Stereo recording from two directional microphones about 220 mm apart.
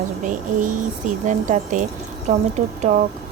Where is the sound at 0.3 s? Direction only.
35° right (ahead or behind).